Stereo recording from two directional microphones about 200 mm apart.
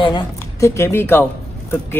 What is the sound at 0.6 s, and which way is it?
Speech, 15° left (ahead or behind).